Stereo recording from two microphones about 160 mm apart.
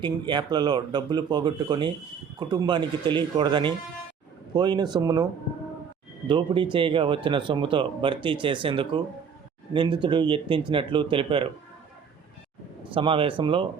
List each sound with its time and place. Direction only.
0.0 s speech: 30° right (ahead or behind)
6.2 s speech: 30° right (ahead or behind)
12.9 s speech: 35° right (ahead or behind)